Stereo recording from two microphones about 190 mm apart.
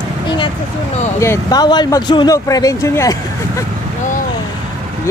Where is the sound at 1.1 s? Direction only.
15° left (ahead or behind).